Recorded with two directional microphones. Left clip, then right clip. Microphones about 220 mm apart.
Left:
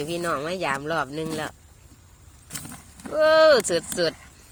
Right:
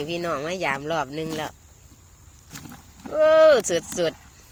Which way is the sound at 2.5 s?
40° left (ahead or behind).